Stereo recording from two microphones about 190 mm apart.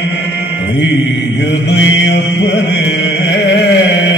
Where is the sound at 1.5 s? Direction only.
70° left (ahead or behind).